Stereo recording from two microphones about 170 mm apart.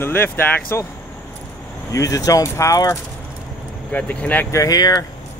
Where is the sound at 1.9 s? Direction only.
20° left (ahead or behind).